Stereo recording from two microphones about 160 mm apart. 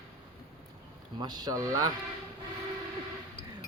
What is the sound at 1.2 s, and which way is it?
Speech, 25° right (ahead or behind).